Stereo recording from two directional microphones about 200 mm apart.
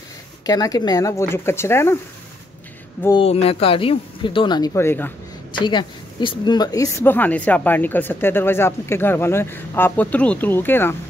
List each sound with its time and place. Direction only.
0.5 s speech: 20° left (ahead or behind)
3.2 s speech: 30° left (ahead or behind); by 5.1 s 10° left (ahead or behind)
5.6 s speech: 25° left (ahead or behind)